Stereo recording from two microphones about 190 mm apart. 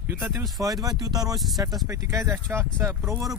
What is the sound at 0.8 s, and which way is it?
Speech, 20° right (ahead or behind).